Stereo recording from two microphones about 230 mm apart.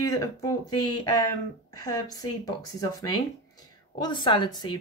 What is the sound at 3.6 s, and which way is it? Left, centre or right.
Speech, centre.